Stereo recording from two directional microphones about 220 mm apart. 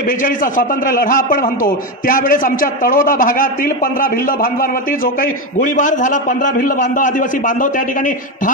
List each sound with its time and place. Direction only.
0.2 s a man's voice: 40° left (ahead or behind)